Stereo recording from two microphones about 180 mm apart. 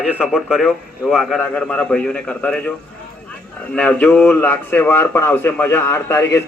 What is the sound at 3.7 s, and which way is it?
Speech, 5° left (ahead or behind).